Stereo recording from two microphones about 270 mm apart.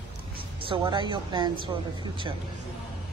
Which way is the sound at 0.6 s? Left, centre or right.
Centre.